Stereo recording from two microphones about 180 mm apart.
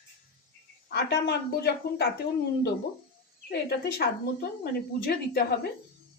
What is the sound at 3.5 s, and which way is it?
Speech, 60° left (ahead or behind).